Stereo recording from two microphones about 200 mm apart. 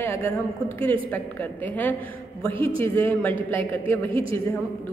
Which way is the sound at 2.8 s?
10° left (ahead or behind).